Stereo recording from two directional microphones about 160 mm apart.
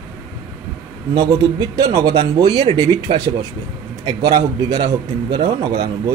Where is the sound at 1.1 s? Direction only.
25° right (ahead or behind).